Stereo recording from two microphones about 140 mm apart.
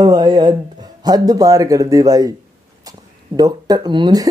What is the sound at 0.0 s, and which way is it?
Speech, 25° right (ahead or behind).